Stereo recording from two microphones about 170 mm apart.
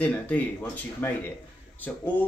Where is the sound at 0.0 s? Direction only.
10° left (ahead or behind).